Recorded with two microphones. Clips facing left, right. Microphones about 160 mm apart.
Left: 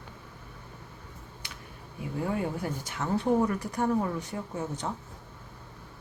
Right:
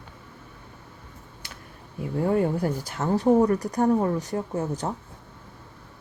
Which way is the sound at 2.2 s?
45° right (ahead or behind).